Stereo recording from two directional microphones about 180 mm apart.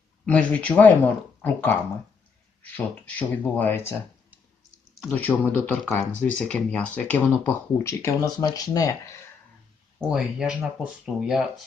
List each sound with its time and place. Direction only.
0.3 s speech: 5° left (ahead or behind)
5.0 s speech: 10° left (ahead or behind)
10.0 s speech: 5° right (ahead or behind)